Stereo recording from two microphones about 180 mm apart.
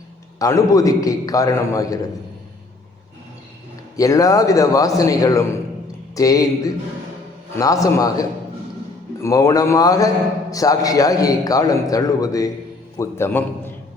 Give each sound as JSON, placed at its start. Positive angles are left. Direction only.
{"t": 0.3, "sound": "a man's voice", "side_deg": 20}
{"t": 3.9, "sound": "a man's voice", "side_deg": 20}
{"t": 7.5, "sound": "a man's voice", "side_deg": 20}